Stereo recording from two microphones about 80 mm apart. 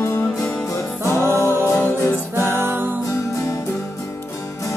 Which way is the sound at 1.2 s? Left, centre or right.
Right.